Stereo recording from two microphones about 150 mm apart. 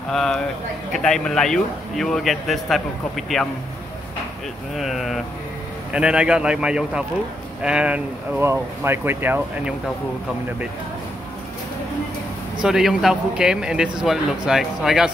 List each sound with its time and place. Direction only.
0.1 s speech: 5° left (ahead or behind)
4.7 s speech: centre (ahead or behind)
12.6 s speech: 5° right (ahead or behind)